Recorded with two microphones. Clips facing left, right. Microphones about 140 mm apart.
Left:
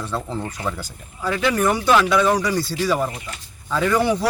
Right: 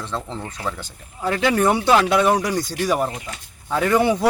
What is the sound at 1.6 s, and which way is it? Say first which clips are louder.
Speech: even; 25° right (ahead or behind).